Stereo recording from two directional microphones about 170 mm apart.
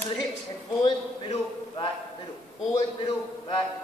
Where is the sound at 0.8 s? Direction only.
30° left (ahead or behind).